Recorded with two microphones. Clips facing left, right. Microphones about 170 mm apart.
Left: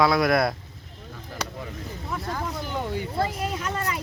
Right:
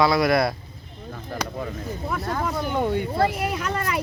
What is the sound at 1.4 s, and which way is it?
Speech, 60° right (ahead or behind).